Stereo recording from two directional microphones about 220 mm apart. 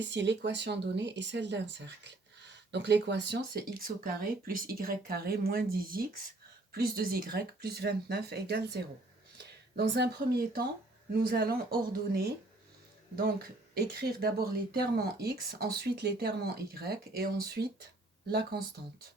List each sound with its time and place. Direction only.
0.1 s speech: 55° right (ahead or behind)
6.7 s speech: 45° right (ahead or behind)
13.7 s speech: 45° right (ahead or behind)